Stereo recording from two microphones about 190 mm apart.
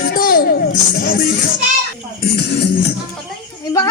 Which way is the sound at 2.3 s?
60° left (ahead or behind).